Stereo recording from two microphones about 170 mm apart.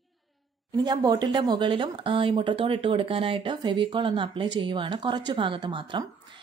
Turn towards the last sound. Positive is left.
turn(degrees=-30)  # may be behind; listen again after turning